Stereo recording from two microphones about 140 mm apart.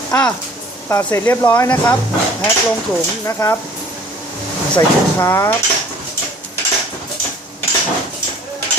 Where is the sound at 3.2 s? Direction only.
20° left (ahead or behind).